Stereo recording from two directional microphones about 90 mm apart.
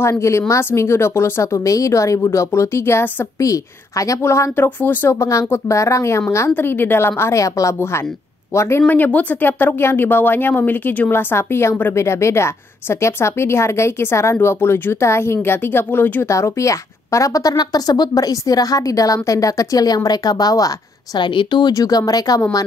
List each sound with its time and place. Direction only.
0.0 s a woman's voice: 30° left (ahead or behind)
3.3 s a woman's voice: 40° left (ahead or behind)
5.3 s a woman's voice: 35° left (ahead or behind)
8.8 s a woman's voice: 20° left (ahead or behind); by 21.2 s 45° left (ahead or behind)
21.2 s speech: 65° left (ahead or behind)
21.7 s speech: 40° left (ahead or behind)